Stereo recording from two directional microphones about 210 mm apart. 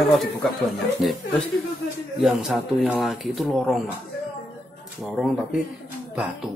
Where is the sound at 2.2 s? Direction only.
Centre (ahead or behind).